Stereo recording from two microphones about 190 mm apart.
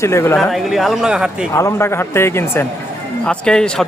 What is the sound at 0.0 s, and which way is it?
Speech, 15° left (ahead or behind).